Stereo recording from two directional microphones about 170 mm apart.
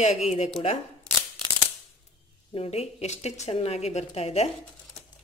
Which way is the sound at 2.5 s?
35° left (ahead or behind).